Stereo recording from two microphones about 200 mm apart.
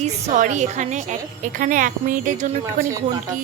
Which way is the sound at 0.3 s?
35° right (ahead or behind).